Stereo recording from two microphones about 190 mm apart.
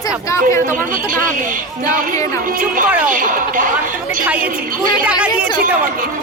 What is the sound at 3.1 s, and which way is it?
Speech, 45° right (ahead or behind).